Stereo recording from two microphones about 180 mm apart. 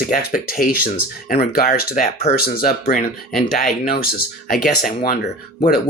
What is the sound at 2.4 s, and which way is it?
Speech, 55° left (ahead or behind).